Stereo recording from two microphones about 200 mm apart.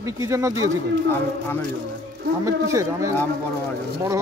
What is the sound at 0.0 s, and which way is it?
Speech, 15° right (ahead or behind).